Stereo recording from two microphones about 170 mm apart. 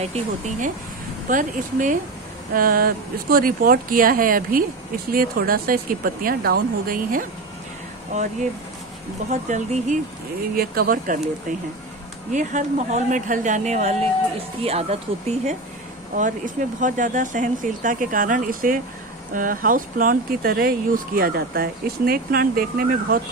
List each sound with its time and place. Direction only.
0.0 s speech: 40° right (ahead or behind)
8.1 s speech: 45° right (ahead or behind)
9.5 s speech: 45° right (ahead or behind)
10.5 s speech: 60° right (ahead or behind)
12.3 s speech: 45° right (ahead or behind)
16.8 s speech: 50° right (ahead or behind)